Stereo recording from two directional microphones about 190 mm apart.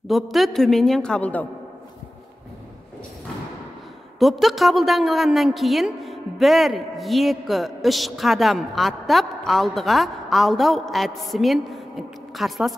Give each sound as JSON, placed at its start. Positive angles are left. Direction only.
{"t": 0.1, "sound": "a woman's voice", "side_deg": 0}
{"t": 4.2, "sound": "a woman's voice", "side_deg": 0}